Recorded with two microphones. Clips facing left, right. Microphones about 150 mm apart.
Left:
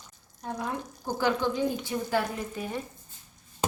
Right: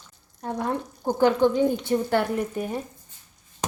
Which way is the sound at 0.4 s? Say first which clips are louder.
Right 6 dB; 60° right (ahead or behind).